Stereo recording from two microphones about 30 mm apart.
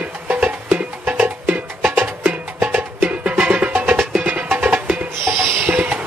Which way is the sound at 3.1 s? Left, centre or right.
Right.